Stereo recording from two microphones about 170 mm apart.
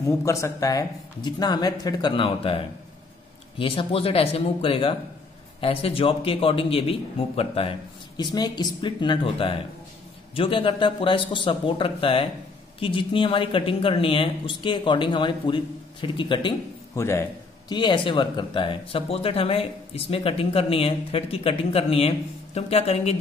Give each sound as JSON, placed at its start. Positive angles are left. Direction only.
{"t": 0.0, "sound": "speech", "side_deg": 15}
{"t": 8.2, "sound": "speech", "side_deg": 25}
{"t": 16.9, "sound": "a man's voice", "side_deg": 15}
{"t": 17.6, "sound": "speech", "side_deg": 25}